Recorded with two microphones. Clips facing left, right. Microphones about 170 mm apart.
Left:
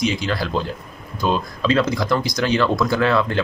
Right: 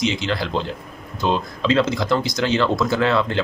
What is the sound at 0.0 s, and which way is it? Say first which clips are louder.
Speech: even; 20° right (ahead or behind).